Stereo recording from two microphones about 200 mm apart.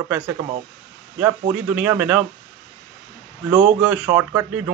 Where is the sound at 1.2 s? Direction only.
10° right (ahead or behind).